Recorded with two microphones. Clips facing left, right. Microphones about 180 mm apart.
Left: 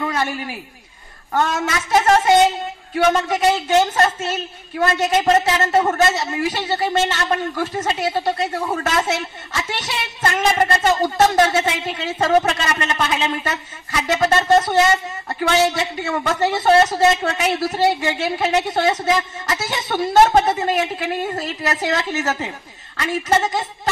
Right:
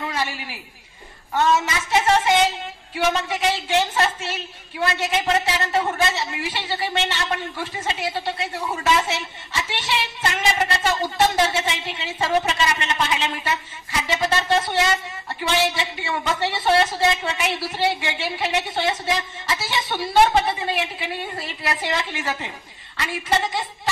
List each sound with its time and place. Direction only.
0.0 s a man's voice: 50° left (ahead or behind)